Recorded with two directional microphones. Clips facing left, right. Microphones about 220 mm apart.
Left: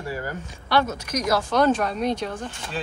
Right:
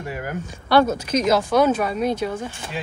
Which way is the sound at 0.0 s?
15° right (ahead or behind).